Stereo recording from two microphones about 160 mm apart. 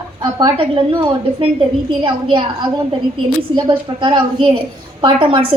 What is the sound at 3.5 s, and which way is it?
A woman's voice, 30° right (ahead or behind).